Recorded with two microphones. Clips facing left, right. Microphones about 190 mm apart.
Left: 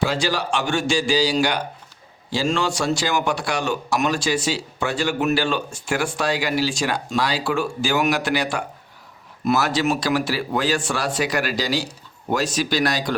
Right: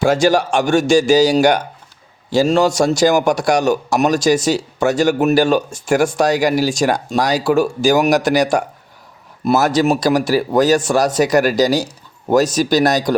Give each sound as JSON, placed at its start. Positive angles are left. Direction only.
{"t": 0.0, "sound": "a man's voice", "side_deg": -45}